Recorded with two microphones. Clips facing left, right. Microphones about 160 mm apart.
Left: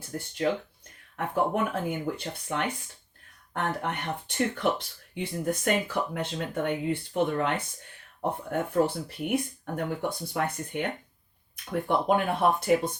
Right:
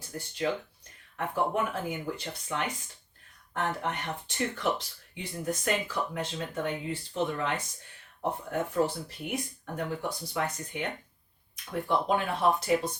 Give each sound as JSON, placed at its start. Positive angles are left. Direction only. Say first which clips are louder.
{"t": 1.1, "sound": "speech", "louder": "left 2 dB", "side_deg": 55}